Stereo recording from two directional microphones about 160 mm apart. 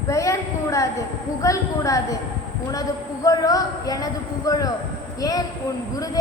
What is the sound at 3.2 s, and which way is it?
A woman's voice, 20° left (ahead or behind).